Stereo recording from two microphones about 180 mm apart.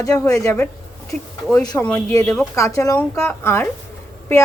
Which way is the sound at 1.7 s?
10° left (ahead or behind).